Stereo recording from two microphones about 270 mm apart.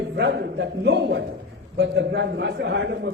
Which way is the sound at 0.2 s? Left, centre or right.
Right.